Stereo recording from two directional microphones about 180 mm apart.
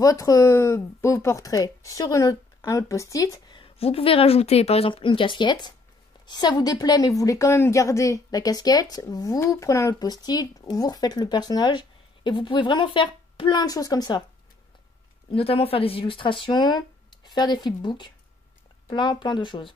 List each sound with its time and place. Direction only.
0.0 s a woman's voice: 20° left (ahead or behind)
15.3 s a woman's voice: 30° left (ahead or behind)